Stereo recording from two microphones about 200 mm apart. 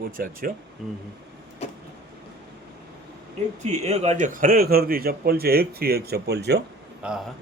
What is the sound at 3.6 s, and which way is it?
A man's voice, 35° right (ahead or behind).